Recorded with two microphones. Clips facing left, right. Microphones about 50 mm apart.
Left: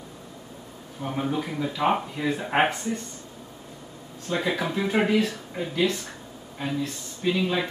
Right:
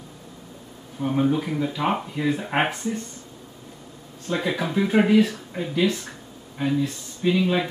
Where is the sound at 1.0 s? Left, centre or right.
Centre.